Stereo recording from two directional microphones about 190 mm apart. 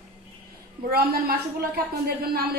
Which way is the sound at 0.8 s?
50° right (ahead or behind).